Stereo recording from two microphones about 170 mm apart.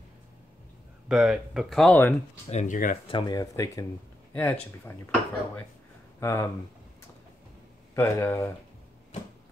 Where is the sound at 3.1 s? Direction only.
25° left (ahead or behind).